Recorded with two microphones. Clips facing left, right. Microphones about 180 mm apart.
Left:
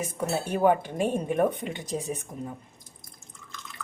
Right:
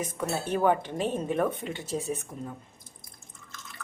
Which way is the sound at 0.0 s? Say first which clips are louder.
Left 2 dB; 10° left (ahead or behind).